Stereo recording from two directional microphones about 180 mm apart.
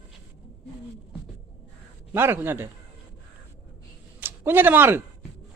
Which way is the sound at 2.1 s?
10° right (ahead or behind).